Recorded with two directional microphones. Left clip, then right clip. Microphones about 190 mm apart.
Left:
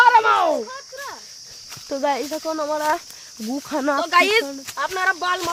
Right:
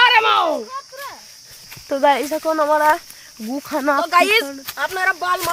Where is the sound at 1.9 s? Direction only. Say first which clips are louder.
Right 6 dB; 10° right (ahead or behind).